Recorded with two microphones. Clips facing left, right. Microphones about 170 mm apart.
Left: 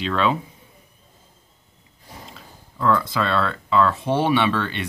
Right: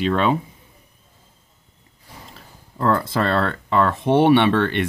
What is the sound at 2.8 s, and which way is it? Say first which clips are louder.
Speech: right 1 dB; 50° right (ahead or behind).